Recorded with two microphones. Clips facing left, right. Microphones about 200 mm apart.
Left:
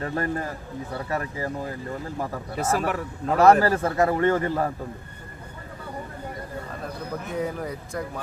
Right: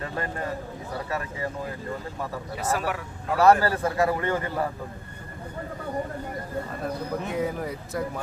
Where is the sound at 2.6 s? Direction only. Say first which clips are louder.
Left 3 dB; 45° left (ahead or behind).